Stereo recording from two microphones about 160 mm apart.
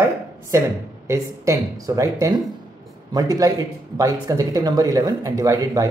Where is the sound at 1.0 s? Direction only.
20° right (ahead or behind).